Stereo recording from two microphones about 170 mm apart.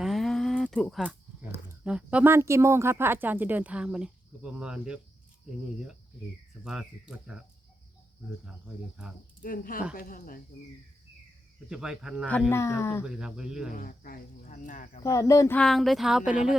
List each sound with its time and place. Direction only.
0.0 s speech: centre (ahead or behind)
6.7 s speech: 5° right (ahead or behind)
9.4 s speech: 55° left (ahead or behind)
11.7 s speech: 5° right (ahead or behind)
12.5 s speech: 15° left (ahead or behind)
13.1 s speech: 5° right (ahead or behind)
13.7 s speech: 55° left (ahead or behind)
15.0 s speech: 20° left (ahead or behind)
15.5 s speech: centre (ahead or behind)